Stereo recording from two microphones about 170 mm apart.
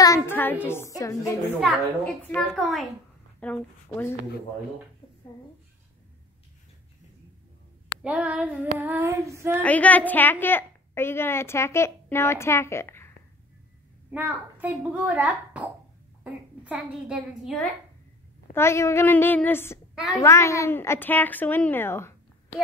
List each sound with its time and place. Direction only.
0.0 s child singing: 15° left (ahead or behind)
0.7 s a woman's voice: 15° left (ahead or behind)
2.2 s a woman's voice: 5° left (ahead or behind)
8.0 s a child's voice: 5° right (ahead or behind)
9.6 s a woman's voice: 10° left (ahead or behind)
14.1 s a child's voice: 10° right (ahead or behind)
18.5 s a woman's voice: 15° left (ahead or behind)